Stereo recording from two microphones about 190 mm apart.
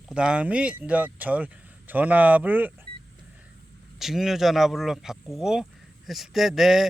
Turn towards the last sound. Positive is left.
turn(degrees=0)  # may be behind; listen again after turning